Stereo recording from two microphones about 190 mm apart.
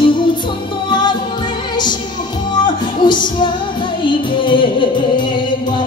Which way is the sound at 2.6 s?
25° left (ahead or behind).